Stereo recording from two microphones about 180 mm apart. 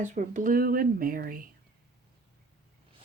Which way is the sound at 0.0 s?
45° right (ahead or behind).